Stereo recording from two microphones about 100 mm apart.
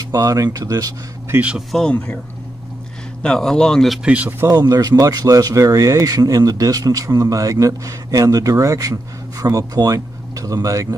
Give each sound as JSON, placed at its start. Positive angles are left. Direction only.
{"t": 0.1, "sound": "speech", "side_deg": -35}
{"t": 1.3, "sound": "speech", "side_deg": -15}
{"t": 1.7, "sound": "speech", "side_deg": 5}
{"t": 3.2, "sound": "speech", "side_deg": 5}
{"t": 4.0, "sound": "speech", "side_deg": -15}
{"t": 4.6, "sound": "speech", "side_deg": -40}